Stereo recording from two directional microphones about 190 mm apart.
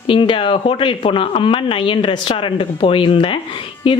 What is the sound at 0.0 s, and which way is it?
A woman's voice, 25° left (ahead or behind).